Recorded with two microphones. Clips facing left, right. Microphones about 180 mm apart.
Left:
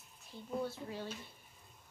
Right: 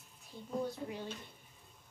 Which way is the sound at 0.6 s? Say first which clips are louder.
Right 1 dB; 15° right (ahead or behind).